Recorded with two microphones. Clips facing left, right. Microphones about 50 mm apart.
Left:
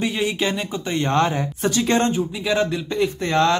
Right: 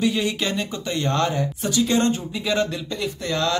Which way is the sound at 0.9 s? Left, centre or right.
Left.